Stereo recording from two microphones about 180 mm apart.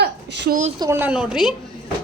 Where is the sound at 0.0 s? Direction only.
70° right (ahead or behind).